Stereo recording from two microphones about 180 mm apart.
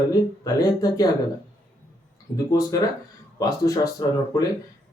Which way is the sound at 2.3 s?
20° left (ahead or behind).